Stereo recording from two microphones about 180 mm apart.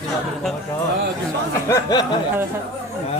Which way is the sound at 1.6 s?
20° left (ahead or behind).